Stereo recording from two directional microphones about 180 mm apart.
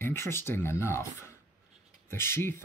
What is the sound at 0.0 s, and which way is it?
Speech, 15° left (ahead or behind).